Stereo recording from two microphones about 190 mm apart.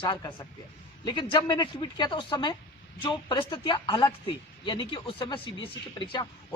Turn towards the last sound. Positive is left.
turn(degrees=25)  # may be behind; listen again after turning